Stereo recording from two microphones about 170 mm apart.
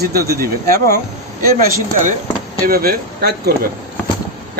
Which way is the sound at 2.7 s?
65° right (ahead or behind).